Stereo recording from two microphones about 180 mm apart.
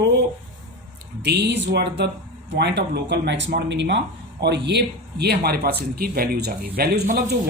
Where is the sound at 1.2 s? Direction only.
70° right (ahead or behind).